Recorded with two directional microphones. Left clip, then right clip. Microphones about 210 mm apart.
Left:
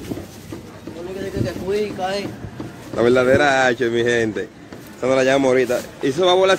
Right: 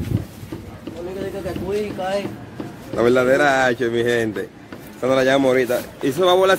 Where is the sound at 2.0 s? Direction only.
Centre (ahead or behind).